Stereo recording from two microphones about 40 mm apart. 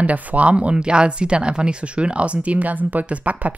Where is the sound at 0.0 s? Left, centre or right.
Right.